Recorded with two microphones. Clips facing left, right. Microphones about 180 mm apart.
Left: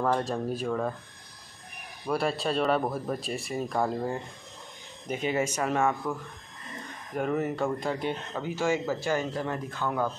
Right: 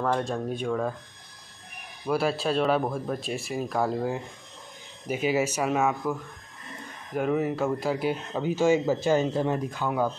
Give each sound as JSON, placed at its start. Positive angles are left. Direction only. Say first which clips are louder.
{"t": 0.0, "sound": "speech", "louder": "even", "side_deg": 0}
{"t": 2.0, "sound": "speech", "louder": "right 2 dB", "side_deg": 0}
{"t": 7.2, "sound": "speech", "louder": "right 3 dB", "side_deg": 0}
{"t": 8.4, "sound": "speech", "louder": "right 6 dB", "side_deg": -20}